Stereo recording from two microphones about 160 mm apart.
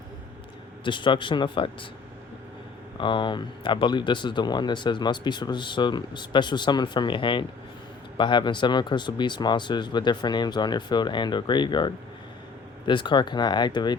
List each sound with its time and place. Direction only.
0.9 s speech: 30° left (ahead or behind)
3.0 s speech: 30° left (ahead or behind)